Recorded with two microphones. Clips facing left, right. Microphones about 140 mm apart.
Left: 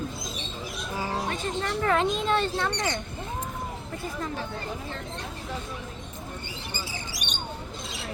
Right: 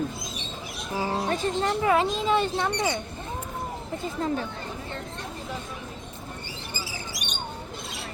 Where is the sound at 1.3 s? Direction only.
30° right (ahead or behind).